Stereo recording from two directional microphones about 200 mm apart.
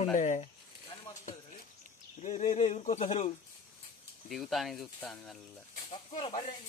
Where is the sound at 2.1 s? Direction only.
35° left (ahead or behind).